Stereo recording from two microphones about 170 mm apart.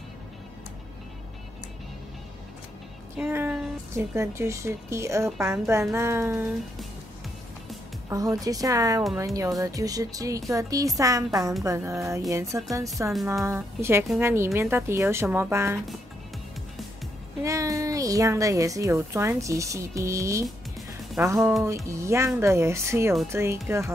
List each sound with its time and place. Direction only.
3.2 s a woman's voice: 10° right (ahead or behind)
8.1 s a woman's voice: 20° right (ahead or behind)
17.4 s a woman's voice: 20° right (ahead or behind)
21.4 s speech: centre (ahead or behind)
21.6 s a woman's voice: 15° right (ahead or behind)